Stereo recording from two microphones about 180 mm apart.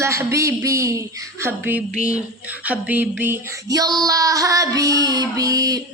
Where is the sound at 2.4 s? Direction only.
10° right (ahead or behind).